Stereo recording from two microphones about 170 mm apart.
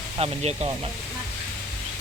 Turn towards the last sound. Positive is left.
turn(degrees=-35)  # may be behind; listen again after turning